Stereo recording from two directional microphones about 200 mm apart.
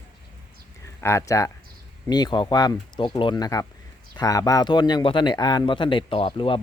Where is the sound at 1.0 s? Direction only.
15° left (ahead or behind).